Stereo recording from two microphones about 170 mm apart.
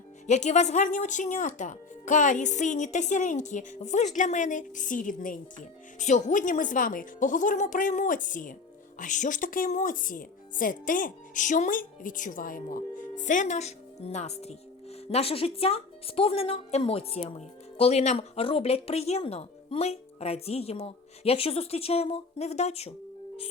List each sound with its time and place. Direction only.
0.3 s speech: 45° left (ahead or behind)